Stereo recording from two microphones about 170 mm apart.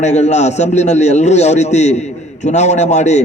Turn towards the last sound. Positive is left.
turn(degrees=40)  # may be behind; listen again after turning